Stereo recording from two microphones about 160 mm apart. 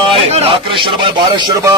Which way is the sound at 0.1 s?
35° right (ahead or behind).